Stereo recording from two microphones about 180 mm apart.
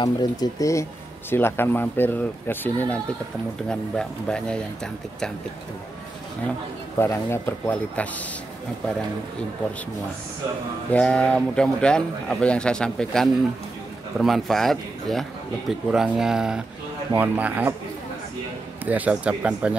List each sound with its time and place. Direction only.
0.0 s speech: 20° left (ahead or behind); by 4.6 s 5° left (ahead or behind)
7.0 s speech: 15° left (ahead or behind)
10.9 s speech: 5° left (ahead or behind)
18.9 s speech: 5° right (ahead or behind)